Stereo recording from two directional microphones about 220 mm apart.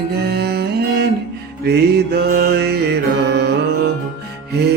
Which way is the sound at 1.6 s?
45° right (ahead or behind).